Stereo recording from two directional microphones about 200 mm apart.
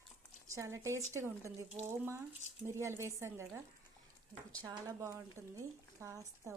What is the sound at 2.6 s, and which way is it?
Speech, 15° right (ahead or behind).